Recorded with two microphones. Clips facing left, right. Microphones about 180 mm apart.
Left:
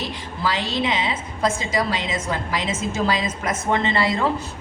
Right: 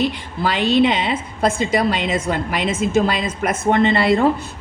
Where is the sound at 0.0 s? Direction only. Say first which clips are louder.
Right 6 dB; 65° right (ahead or behind).